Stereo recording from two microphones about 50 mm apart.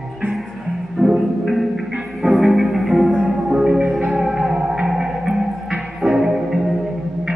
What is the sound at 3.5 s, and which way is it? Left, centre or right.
Music, centre.